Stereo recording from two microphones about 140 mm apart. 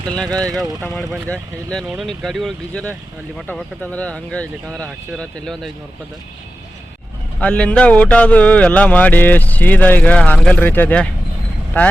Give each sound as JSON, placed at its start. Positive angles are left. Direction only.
{"t": 0.3, "sound": "speech", "side_deg": -25}
{"t": 0.9, "sound": "speech", "side_deg": 5}
{"t": 7.3, "sound": "speech", "side_deg": 10}